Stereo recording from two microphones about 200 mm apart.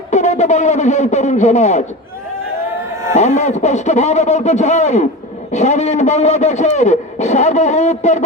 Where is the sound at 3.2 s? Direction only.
35° left (ahead or behind).